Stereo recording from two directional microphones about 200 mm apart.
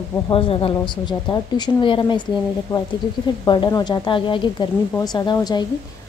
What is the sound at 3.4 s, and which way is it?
A woman's voice, 20° left (ahead or behind).